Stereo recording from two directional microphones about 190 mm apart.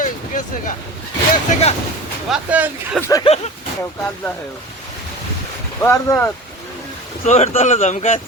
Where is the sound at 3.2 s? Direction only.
35° left (ahead or behind).